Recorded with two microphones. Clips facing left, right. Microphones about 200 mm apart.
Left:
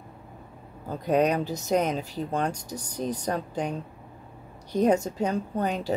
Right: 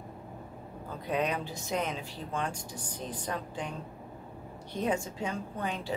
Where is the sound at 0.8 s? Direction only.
40° left (ahead or behind).